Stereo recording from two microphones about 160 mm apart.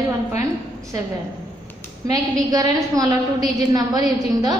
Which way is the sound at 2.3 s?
20° right (ahead or behind).